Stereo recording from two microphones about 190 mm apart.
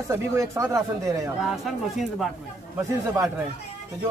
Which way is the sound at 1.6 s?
Centre (ahead or behind).